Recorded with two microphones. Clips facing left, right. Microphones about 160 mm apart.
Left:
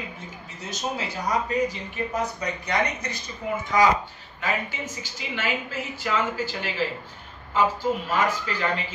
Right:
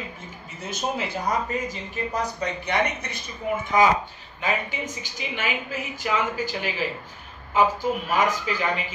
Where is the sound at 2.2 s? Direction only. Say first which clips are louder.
Right 2 dB; 25° right (ahead or behind).